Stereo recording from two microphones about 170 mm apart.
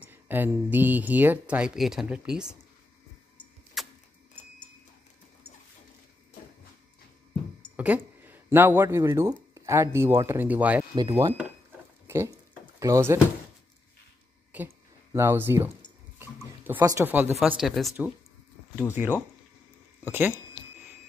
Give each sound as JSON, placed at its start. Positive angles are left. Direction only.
{"t": 0.1, "sound": "speech", "side_deg": -10}
{"t": 3.8, "sound": "vehicle", "side_deg": 0}
{"t": 7.7, "sound": "a sound", "side_deg": -10}
{"t": 8.2, "sound": "speech", "side_deg": -10}
{"t": 11.0, "sound": "speech", "side_deg": -25}
{"t": 12.1, "sound": "a sound", "side_deg": -15}
{"t": 14.5, "sound": "a sound", "side_deg": -10}
{"t": 15.1, "sound": "speech", "side_deg": -15}
{"t": 20.1, "sound": "speech", "side_deg": -10}